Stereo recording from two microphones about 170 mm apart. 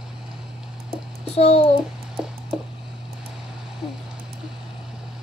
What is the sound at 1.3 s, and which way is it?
Speech, 35° left (ahead or behind).